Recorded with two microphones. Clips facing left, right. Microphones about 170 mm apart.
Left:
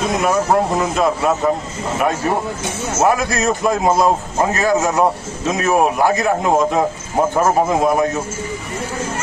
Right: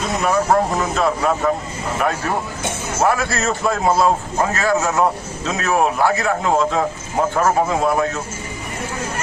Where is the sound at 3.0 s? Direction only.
15° left (ahead or behind).